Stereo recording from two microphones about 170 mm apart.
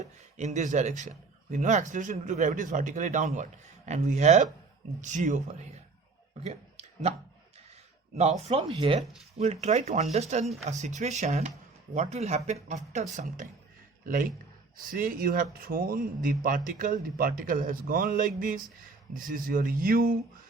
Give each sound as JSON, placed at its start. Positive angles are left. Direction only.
{"t": 0.0, "sound": "speech", "side_deg": -45}
{"t": 6.4, "sound": "a sound", "side_deg": -40}
{"t": 8.1, "sound": "speech", "side_deg": -40}